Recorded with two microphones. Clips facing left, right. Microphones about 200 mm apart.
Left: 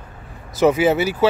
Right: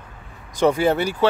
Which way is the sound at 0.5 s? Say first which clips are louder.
Left 2 dB; 5° left (ahead or behind).